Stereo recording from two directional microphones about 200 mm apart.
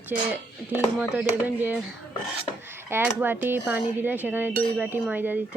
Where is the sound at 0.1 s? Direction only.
5° right (ahead or behind).